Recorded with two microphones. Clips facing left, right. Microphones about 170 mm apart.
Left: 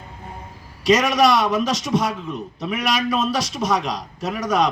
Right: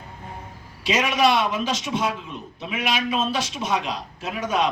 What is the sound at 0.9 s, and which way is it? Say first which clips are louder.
A man's voice: left 4 dB; 40° left (ahead or behind).